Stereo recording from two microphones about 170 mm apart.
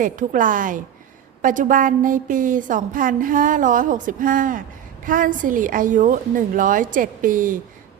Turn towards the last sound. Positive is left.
turn(degrees=-50)  # may be behind; listen again after turning